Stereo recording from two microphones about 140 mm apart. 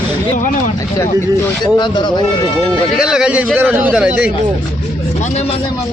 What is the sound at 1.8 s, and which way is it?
Speech, 35° left (ahead or behind).